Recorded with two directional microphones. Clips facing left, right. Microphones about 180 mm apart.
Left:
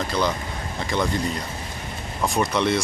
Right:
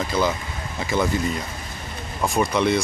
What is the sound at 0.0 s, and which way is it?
Speech, 5° right (ahead or behind).